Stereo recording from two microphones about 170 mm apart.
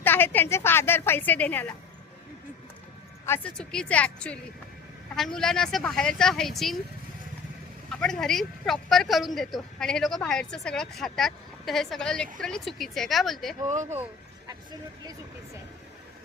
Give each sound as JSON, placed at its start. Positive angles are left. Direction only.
{"t": 0.0, "sound": "a woman's voice", "side_deg": 10}
{"t": 3.2, "sound": "a woman's voice", "side_deg": 10}
{"t": 7.9, "sound": "a woman's voice", "side_deg": 5}
{"t": 13.7, "sound": "speech", "side_deg": -45}